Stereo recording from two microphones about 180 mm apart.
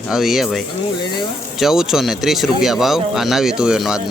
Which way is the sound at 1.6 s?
Centre (ahead or behind).